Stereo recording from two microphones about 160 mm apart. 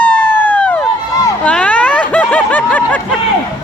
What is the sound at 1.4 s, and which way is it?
Snicker, 10° left (ahead or behind).